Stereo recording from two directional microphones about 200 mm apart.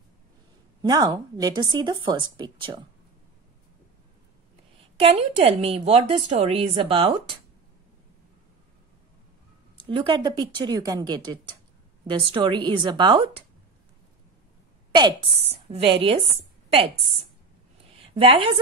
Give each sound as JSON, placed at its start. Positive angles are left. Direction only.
{"t": 0.8, "sound": "speech", "side_deg": -20}
{"t": 4.9, "sound": "speech", "side_deg": -30}
{"t": 9.8, "sound": "speech", "side_deg": -25}
{"t": 15.5, "sound": "speech", "side_deg": -30}
{"t": 18.1, "sound": "speech", "side_deg": -25}